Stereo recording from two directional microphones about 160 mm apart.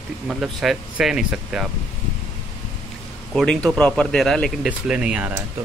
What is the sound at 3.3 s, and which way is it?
Speech, centre (ahead or behind).